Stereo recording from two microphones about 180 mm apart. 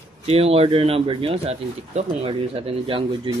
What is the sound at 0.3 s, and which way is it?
Speech, 35° right (ahead or behind).